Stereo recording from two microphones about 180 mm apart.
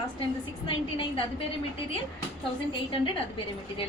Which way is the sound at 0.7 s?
30° left (ahead or behind).